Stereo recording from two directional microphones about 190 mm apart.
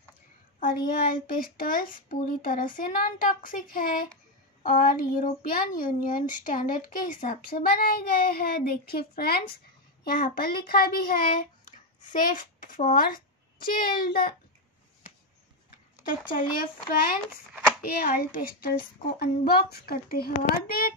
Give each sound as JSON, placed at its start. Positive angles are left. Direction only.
{"t": 1.2, "sound": "speech", "side_deg": 50}
{"t": 16.3, "sound": "speech", "side_deg": 50}